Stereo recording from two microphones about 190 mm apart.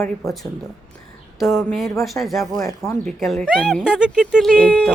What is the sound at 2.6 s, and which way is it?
Speech, 15° left (ahead or behind).